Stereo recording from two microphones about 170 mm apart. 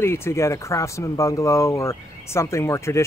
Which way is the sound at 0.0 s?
15° left (ahead or behind).